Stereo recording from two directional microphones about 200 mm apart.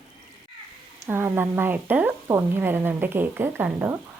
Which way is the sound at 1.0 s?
10° right (ahead or behind).